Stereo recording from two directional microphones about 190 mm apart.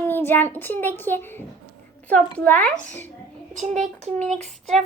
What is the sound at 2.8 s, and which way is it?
Speech, 40° right (ahead or behind).